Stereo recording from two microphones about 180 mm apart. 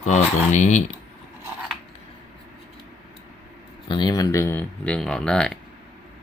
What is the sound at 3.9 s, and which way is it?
Speech, 25° left (ahead or behind).